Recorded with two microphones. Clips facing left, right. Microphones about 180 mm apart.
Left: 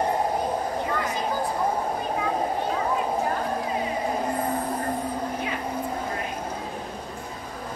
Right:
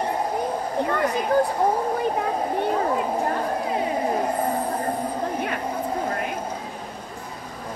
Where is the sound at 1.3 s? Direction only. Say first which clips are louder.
Right 11 dB; 60° right (ahead or behind).